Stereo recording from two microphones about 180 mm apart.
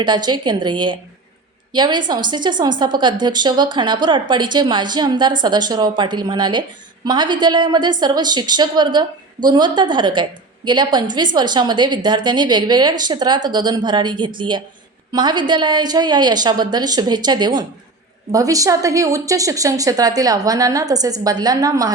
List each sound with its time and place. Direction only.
0.0 s a woman's voice: 25° right (ahead or behind)